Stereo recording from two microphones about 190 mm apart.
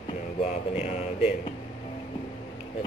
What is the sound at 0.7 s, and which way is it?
Speech, 35° left (ahead or behind).